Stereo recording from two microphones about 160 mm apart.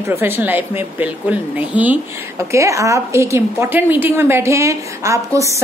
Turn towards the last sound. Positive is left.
turn(degrees=-20)  # may be behind; listen again after turning